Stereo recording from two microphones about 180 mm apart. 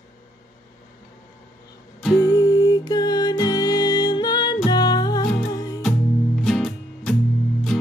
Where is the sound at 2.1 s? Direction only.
20° left (ahead or behind).